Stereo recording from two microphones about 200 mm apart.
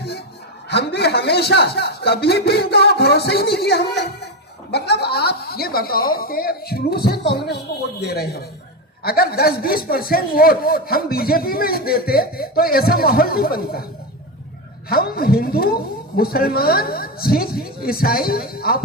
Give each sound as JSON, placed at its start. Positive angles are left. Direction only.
{"t": 0.7, "sound": "a man's voice", "side_deg": 55}
{"t": 14.8, "sound": "speech", "side_deg": 50}